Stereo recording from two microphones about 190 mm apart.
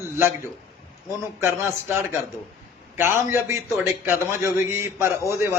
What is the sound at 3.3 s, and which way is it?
A man's voice, 15° right (ahead or behind).